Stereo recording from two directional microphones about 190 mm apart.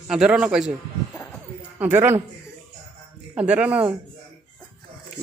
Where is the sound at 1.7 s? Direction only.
10° right (ahead or behind).